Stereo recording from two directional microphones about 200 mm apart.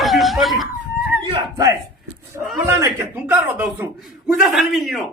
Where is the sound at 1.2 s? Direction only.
20° right (ahead or behind).